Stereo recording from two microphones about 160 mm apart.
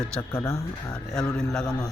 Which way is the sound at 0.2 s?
15° left (ahead or behind).